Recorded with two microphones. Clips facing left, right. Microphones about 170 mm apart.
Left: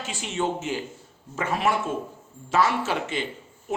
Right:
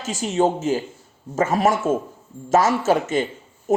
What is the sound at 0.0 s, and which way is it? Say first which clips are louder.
Speech: right 8 dB; 40° right (ahead or behind).